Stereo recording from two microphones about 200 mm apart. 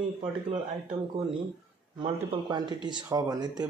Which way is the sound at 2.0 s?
20° right (ahead or behind).